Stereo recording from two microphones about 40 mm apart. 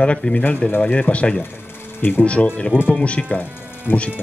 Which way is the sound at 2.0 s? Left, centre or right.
Left.